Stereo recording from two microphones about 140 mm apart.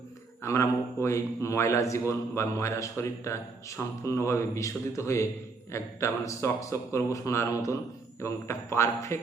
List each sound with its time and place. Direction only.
0.4 s a man's voice: 20° left (ahead or behind)